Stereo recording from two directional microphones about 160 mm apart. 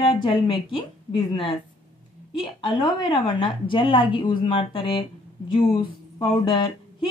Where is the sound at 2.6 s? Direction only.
30° left (ahead or behind).